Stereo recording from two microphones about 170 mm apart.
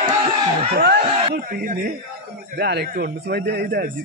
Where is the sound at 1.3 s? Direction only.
55° right (ahead or behind).